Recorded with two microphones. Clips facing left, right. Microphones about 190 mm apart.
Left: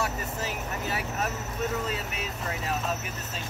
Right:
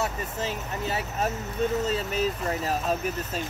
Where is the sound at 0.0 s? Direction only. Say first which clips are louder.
Right 2 dB; 25° right (ahead or behind).